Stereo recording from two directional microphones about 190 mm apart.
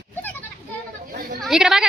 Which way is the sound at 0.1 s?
10° left (ahead or behind).